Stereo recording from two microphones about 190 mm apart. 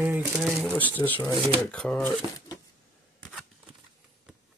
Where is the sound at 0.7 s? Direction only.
10° left (ahead or behind).